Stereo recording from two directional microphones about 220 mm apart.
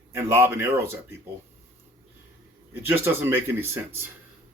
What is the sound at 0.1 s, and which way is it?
Speech, 10° right (ahead or behind).